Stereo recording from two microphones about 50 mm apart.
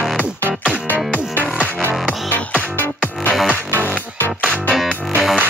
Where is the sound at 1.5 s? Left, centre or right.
Right.